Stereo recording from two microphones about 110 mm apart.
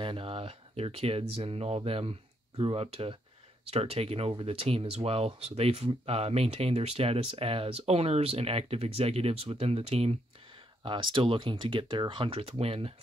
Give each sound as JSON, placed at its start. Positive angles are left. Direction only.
{"t": 0.0, "sound": "speech", "side_deg": -55}
{"t": 10.8, "sound": "speech", "side_deg": -50}